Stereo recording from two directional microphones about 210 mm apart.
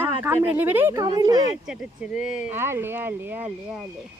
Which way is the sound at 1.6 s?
5° right (ahead or behind).